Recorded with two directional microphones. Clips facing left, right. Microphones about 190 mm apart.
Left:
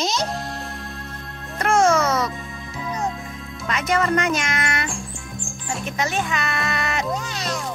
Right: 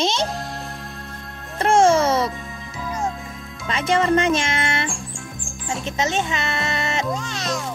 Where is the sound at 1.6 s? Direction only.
30° right (ahead or behind).